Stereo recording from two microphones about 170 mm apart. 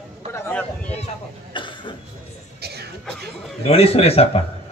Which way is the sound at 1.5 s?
30° left (ahead or behind).